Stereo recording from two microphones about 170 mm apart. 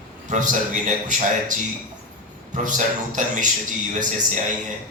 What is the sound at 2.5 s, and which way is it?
Speech, 45° right (ahead or behind).